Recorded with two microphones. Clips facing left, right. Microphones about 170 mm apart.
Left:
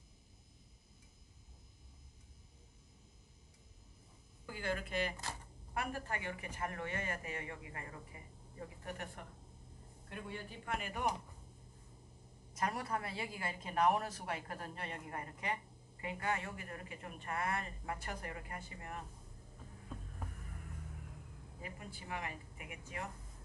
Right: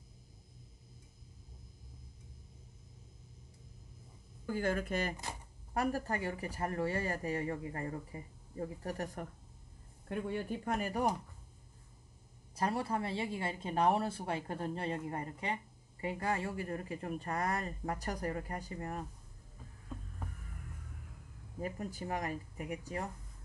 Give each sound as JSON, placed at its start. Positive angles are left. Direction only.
{"t": 4.5, "sound": "a woman's voice", "side_deg": -45}
{"t": 12.5, "sound": "a woman's voice", "side_deg": -30}
{"t": 21.5, "sound": "a woman's voice", "side_deg": -45}